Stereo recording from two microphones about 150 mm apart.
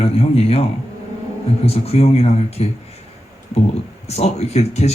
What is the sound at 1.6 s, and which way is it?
Speech, 40° left (ahead or behind).